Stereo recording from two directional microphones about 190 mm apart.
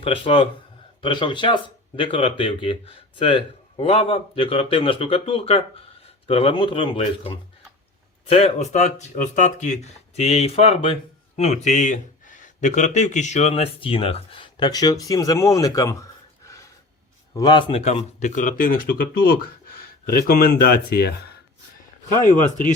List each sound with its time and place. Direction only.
0.0 s speech: 30° left (ahead or behind); by 21.1 s 55° left (ahead or behind)
22.2 s speech: 40° left (ahead or behind)